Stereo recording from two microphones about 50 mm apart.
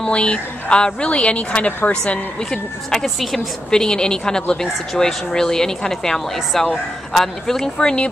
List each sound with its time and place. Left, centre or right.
0.0 s speech: centre
2.5 s a woman's voice: centre